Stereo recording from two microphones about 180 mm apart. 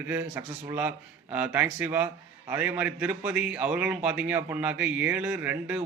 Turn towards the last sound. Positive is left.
turn(degrees=-10)  # may be behind; listen again after turning